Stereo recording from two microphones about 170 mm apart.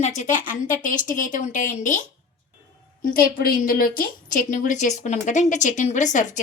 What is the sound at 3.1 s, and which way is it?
A woman's voice, 60° left (ahead or behind).